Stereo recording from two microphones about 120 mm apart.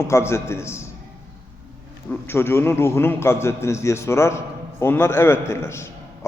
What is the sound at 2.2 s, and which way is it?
A man's voice, 20° left (ahead or behind).